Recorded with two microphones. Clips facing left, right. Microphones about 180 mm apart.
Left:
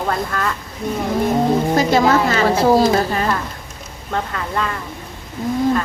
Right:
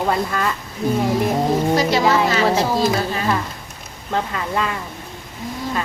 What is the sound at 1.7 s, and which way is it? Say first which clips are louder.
Speech: left 3 dB; 50° left (ahead or behind).